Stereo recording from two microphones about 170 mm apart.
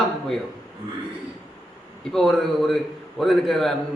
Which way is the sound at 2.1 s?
Centre (ahead or behind).